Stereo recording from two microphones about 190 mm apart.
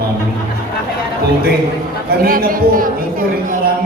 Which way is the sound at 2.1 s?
50° right (ahead or behind).